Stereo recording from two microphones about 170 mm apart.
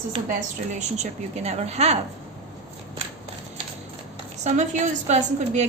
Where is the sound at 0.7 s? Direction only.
45° right (ahead or behind).